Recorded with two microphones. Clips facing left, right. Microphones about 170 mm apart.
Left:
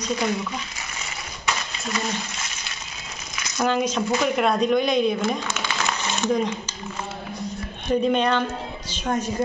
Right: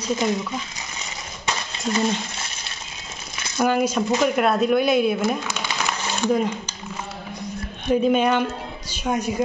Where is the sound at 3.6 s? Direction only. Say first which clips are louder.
Right 2 dB; 10° right (ahead or behind).